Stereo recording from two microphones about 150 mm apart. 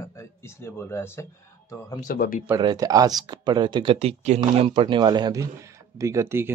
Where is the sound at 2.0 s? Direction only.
65° left (ahead or behind).